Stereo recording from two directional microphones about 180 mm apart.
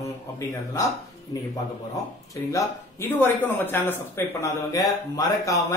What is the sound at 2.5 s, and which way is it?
Speech, 15° left (ahead or behind).